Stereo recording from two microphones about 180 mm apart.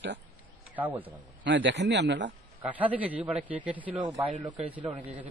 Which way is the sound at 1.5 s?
90° right.